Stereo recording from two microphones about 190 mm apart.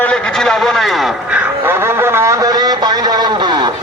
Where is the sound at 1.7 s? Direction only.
10° right (ahead or behind).